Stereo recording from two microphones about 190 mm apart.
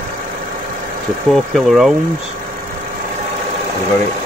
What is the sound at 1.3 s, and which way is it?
Speech, centre (ahead or behind).